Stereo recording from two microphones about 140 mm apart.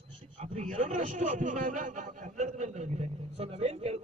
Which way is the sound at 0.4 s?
60° right (ahead or behind).